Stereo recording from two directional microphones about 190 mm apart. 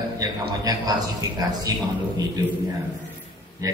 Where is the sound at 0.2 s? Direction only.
20° right (ahead or behind).